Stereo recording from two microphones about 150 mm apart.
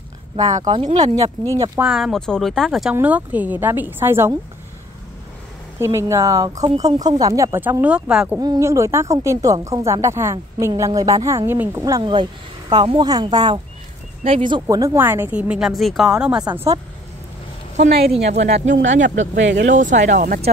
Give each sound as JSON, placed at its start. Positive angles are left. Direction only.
{"t": 0.8, "sound": "speech", "side_deg": -50}
{"t": 1.8, "sound": "a woman's voice", "side_deg": -5}
{"t": 5.8, "sound": "speech", "side_deg": -20}
{"t": 8.4, "sound": "a woman's voice", "side_deg": -20}
{"t": 17.7, "sound": "speech", "side_deg": -45}